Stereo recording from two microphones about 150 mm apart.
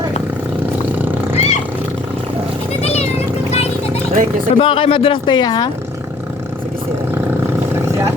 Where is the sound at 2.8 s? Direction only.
45° left (ahead or behind).